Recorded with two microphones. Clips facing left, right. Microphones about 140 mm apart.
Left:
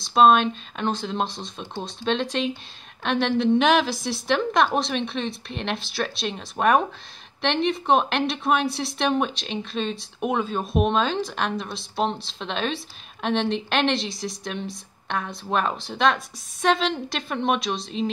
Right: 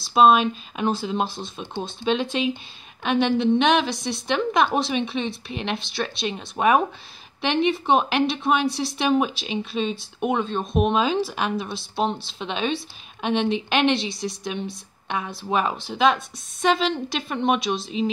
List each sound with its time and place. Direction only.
0.0 s speech: 5° right (ahead or behind)